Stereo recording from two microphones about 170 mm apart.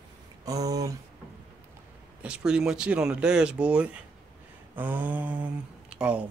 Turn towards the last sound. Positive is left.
turn(degrees=-5)  # may be behind; listen again after turning